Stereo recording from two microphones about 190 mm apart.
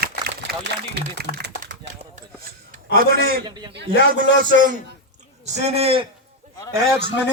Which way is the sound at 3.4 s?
20° right (ahead or behind).